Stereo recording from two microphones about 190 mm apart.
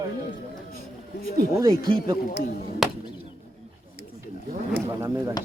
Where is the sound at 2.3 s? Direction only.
50° left (ahead or behind).